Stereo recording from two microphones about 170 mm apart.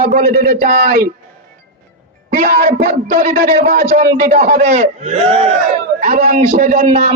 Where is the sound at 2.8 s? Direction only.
50° right (ahead or behind).